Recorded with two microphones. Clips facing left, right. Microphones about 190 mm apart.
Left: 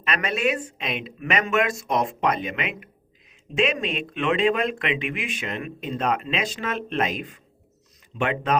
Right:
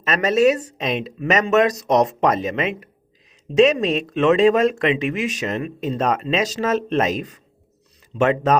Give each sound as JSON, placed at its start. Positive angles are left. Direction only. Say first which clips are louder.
{"t": 0.0, "sound": "speech", "louder": "right 9 dB", "side_deg": -40}